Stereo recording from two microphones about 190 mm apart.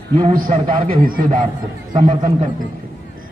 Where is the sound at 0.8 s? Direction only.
50° right (ahead or behind).